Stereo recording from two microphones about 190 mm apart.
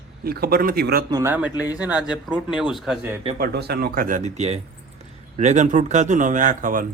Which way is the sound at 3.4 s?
60° right (ahead or behind).